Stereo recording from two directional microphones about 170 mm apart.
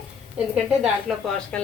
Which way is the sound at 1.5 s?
5° left (ahead or behind).